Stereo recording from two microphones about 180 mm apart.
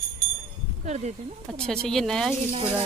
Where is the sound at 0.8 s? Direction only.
40° right (ahead or behind).